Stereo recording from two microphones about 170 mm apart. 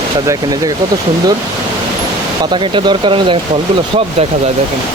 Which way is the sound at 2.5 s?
30° right (ahead or behind).